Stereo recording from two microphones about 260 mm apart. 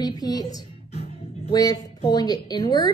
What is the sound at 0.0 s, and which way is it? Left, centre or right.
A woman's voice, centre.